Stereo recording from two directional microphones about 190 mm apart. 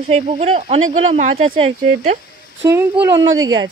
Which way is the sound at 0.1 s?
35° right (ahead or behind).